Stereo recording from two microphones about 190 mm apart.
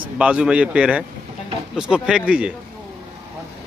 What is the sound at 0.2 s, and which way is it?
A man's voice, 5° right (ahead or behind).